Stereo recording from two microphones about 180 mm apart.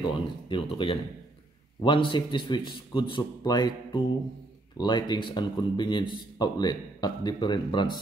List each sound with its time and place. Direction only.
0.0 s speech: 25° left (ahead or behind)